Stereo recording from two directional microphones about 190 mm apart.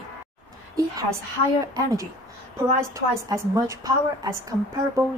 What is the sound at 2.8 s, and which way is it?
A woman's voice, 15° right (ahead or behind).